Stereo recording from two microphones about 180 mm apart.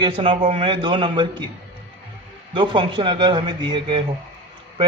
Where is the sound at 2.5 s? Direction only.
25° right (ahead or behind).